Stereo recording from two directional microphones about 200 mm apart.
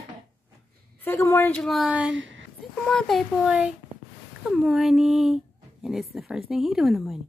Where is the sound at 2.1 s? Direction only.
70° right (ahead or behind).